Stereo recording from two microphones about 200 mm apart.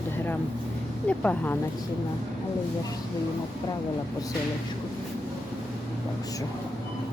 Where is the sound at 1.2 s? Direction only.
5° left (ahead or behind).